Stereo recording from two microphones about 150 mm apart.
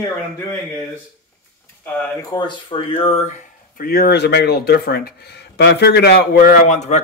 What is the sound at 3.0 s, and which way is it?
Speech, 45° left (ahead or behind).